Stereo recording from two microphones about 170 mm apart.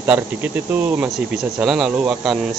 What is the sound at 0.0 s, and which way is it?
Speech, 10° right (ahead or behind).